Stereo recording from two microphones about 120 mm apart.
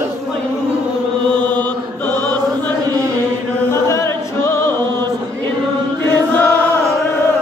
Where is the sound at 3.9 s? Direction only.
20° left (ahead or behind).